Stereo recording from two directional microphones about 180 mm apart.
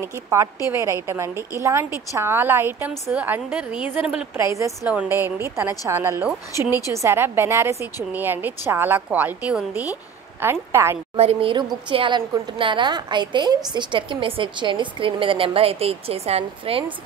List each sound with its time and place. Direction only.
0.0 s a woman's voice: 15° right (ahead or behind)
4.4 s a woman's voice: 15° right (ahead or behind)
11.1 s a woman's voice: 30° right (ahead or behind)